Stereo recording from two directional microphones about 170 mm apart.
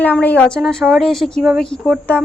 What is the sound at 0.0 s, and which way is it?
Speech, 10° left (ahead or behind).